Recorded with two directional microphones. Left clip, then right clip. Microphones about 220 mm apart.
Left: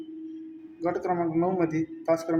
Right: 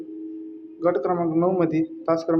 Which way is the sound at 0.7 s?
5° left (ahead or behind).